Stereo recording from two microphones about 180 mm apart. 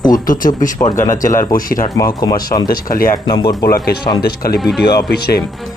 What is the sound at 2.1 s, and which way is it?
Speech, 20° left (ahead or behind).